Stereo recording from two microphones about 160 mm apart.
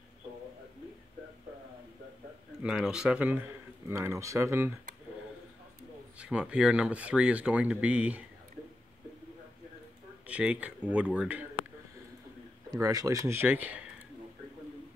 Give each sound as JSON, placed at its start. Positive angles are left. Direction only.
{"t": 2.6, "sound": "speech", "side_deg": -5}
{"t": 6.1, "sound": "speech", "side_deg": -5}
{"t": 10.2, "sound": "speech", "side_deg": -5}
{"t": 12.7, "sound": "speech", "side_deg": -20}